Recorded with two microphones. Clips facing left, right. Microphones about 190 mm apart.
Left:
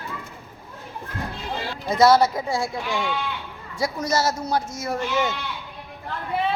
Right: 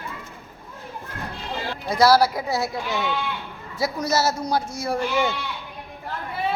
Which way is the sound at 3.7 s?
5° right (ahead or behind).